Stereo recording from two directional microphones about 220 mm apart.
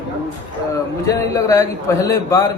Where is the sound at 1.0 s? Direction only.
15° left (ahead or behind).